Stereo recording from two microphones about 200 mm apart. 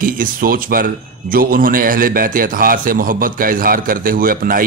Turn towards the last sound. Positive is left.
turn(degrees=-45)  # may be behind; listen again after turning